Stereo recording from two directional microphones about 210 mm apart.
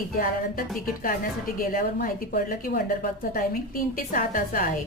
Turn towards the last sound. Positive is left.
turn(degrees=40)  # may be behind; listen again after turning